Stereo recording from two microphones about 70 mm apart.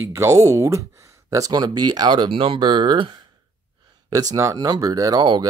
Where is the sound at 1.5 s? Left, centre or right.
Right.